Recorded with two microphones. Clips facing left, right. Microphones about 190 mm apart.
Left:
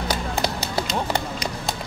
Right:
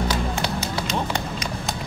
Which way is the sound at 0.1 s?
40° left (ahead or behind).